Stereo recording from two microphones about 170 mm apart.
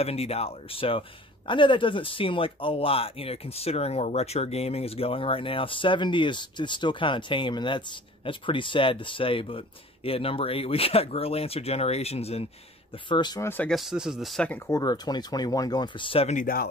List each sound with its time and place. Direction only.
0.0 s speech: 35° left (ahead or behind)
13.5 s speech: 10° left (ahead or behind)
13.7 s speech: 5° right (ahead or behind)
14.7 s speech: 20° left (ahead or behind)
16.3 s speech: 60° left (ahead or behind)